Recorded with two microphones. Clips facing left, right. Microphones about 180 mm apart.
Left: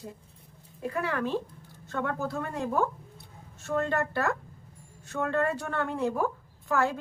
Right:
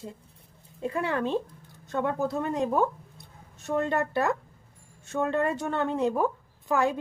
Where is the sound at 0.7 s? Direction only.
25° right (ahead or behind).